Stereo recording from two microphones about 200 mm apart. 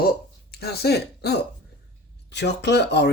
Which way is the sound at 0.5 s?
55° left (ahead or behind).